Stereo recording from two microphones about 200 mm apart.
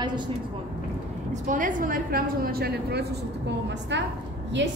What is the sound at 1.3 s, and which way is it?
A woman's voice, 40° right (ahead or behind).